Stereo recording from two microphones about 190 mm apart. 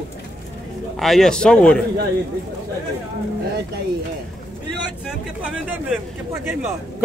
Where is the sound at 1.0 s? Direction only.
Centre (ahead or behind).